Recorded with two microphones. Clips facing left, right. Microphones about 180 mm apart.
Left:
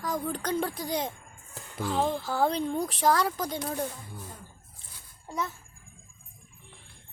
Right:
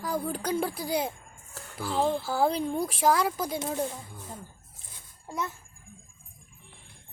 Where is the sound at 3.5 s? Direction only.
20° right (ahead or behind).